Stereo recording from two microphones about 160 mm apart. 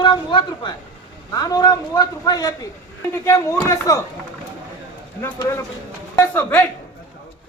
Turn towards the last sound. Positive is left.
turn(degrees=10)  # may be behind; listen again after turning